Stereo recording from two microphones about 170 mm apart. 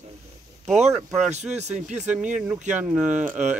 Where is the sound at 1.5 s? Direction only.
40° right (ahead or behind).